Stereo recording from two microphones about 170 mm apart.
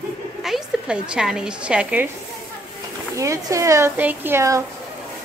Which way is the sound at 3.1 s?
20° right (ahead or behind).